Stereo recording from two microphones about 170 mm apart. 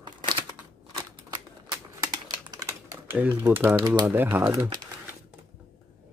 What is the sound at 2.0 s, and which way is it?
Typing, 20° right (ahead or behind).